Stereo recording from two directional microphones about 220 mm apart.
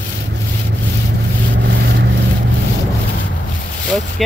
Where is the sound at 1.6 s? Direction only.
50° right (ahead or behind).